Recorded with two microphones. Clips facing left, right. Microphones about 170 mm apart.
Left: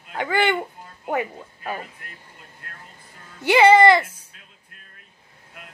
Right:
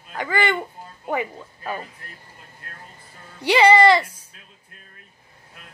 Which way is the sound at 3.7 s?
50° left (ahead or behind).